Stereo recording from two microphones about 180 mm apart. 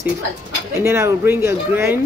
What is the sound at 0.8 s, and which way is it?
Speech, 15° right (ahead or behind).